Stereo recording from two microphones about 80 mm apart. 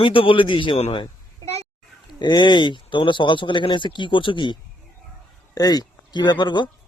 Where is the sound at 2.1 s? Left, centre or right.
Left.